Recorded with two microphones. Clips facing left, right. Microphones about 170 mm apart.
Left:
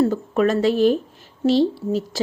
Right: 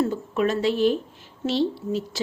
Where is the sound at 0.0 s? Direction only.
45° left (ahead or behind).